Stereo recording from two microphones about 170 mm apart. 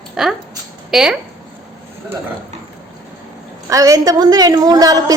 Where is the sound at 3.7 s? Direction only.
20° right (ahead or behind).